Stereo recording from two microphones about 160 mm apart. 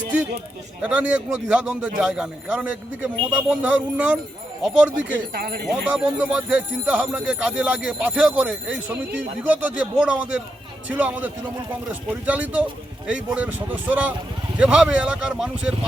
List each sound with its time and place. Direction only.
0.8 s jingle bell: 10° right (ahead or behind)
4.6 s speech: 5° right (ahead or behind)
5.3 s speech: 70° right (ahead or behind)
5.9 s jingle bell: 10° right (ahead or behind)